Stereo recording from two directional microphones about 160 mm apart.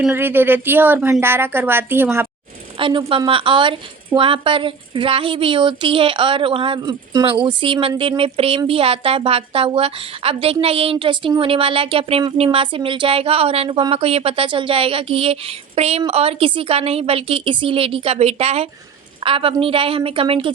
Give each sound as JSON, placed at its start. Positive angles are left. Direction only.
{"t": 0.0, "sound": "speech", "side_deg": -15}
{"t": 2.7, "sound": "a woman's voice", "side_deg": -30}